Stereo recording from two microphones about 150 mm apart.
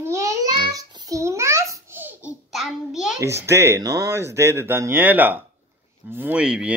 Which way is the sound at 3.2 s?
20° right (ahead or behind).